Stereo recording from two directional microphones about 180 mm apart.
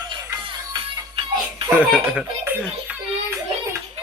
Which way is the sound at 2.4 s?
10° right (ahead or behind).